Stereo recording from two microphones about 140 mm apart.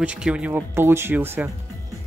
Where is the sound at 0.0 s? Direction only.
10° right (ahead or behind).